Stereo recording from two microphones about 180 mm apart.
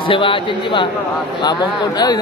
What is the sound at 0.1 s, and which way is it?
Speech, 30° left (ahead or behind).